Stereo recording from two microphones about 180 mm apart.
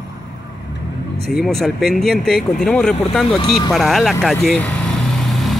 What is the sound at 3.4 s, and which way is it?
Speech, 20° left (ahead or behind).